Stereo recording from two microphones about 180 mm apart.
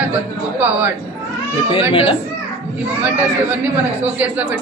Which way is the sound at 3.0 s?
10° right (ahead or behind).